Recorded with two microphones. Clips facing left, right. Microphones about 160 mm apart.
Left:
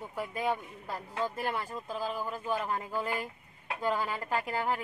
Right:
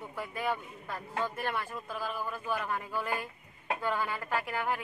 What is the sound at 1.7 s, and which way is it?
Speech, 30° left (ahead or behind).